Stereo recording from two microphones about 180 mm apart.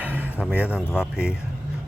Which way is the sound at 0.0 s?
10° right (ahead or behind).